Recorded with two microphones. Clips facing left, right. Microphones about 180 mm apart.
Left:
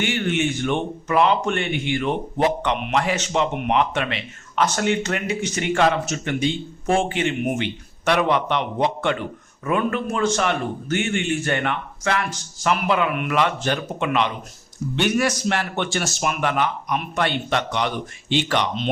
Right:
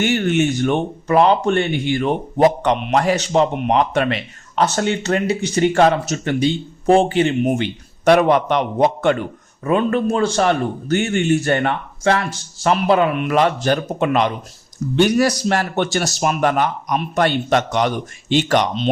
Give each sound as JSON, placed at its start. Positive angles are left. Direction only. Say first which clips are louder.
{"t": 0.0, "sound": "speech", "louder": "right 5 dB", "side_deg": -40}
{"t": 9.6, "sound": "speech", "louder": "right 5 dB", "side_deg": -30}